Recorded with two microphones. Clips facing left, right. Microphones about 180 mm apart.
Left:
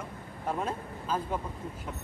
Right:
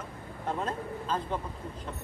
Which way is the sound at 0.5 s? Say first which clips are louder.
Even; 10° left (ahead or behind).